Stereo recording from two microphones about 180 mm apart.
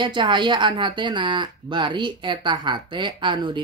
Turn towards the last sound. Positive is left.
turn(degrees=-25)  # may be behind; listen again after turning